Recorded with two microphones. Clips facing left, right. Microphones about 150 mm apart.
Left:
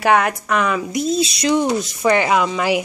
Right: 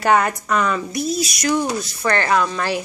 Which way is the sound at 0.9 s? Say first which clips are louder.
Left 3 dB; 25° left (ahead or behind).